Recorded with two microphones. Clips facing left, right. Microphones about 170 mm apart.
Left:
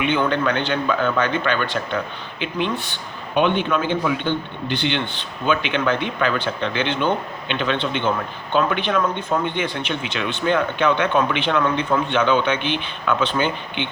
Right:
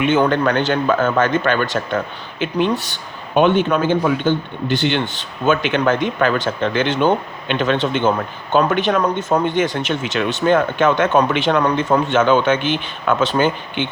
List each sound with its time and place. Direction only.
0.0 s a man's voice: 45° right (ahead or behind)